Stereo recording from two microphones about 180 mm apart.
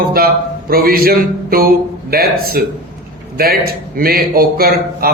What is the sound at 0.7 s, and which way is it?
A man's voice, 55° right (ahead or behind).